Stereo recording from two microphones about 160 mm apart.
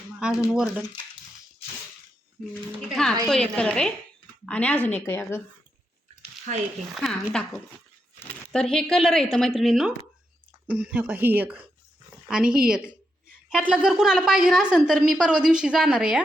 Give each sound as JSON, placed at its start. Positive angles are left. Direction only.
{"t": 0.2, "sound": "a woman's voice", "side_deg": -5}
{"t": 2.9, "sound": "a woman's voice", "side_deg": 5}
{"t": 6.5, "sound": "speech", "side_deg": -50}
{"t": 6.9, "sound": "a woman's voice", "side_deg": 0}